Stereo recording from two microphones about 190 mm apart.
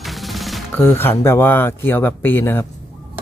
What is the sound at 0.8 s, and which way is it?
Speech, 10° left (ahead or behind).